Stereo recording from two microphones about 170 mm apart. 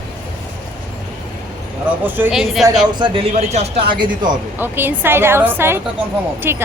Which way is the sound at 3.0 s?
35° right (ahead or behind).